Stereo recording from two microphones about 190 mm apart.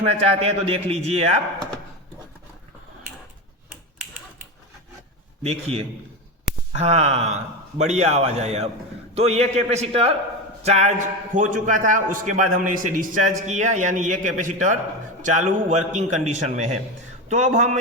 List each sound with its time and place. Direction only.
0.0 s a man's voice: 35° right (ahead or behind)
5.4 s a man's voice: 35° right (ahead or behind)